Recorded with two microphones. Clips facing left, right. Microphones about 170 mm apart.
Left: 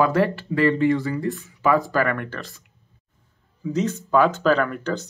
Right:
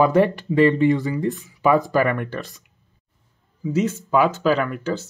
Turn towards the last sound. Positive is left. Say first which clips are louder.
# even
turn(degrees=-5)  # may be behind; listen again after turning